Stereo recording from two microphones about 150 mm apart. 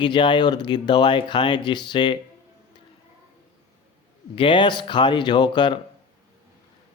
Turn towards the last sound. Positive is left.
turn(degrees=30)  # may be behind; listen again after turning